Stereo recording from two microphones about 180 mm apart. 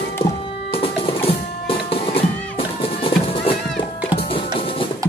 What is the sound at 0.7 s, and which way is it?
Music, 30° left (ahead or behind).